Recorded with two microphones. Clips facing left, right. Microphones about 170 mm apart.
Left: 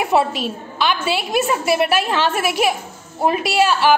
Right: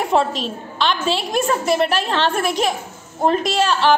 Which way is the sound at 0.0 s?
5° left (ahead or behind).